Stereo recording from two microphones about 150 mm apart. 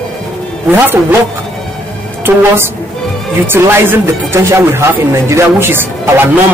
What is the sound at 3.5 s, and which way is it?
Speech, 15° right (ahead or behind).